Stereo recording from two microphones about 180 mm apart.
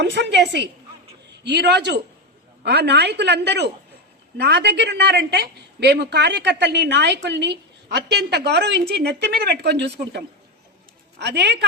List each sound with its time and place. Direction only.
0.0 s a woman's voice: 70° right (ahead or behind)